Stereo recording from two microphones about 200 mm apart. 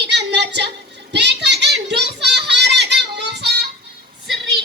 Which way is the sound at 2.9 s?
60° right (ahead or behind).